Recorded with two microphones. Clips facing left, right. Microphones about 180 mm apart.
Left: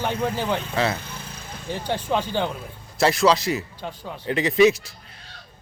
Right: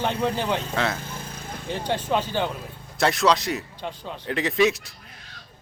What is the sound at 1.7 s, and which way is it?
Speech, 15° right (ahead or behind).